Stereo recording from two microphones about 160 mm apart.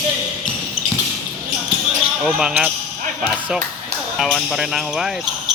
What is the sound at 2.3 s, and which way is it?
Speech, 5° right (ahead or behind).